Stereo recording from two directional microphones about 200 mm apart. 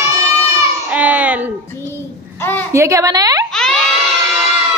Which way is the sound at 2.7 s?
15° right (ahead or behind).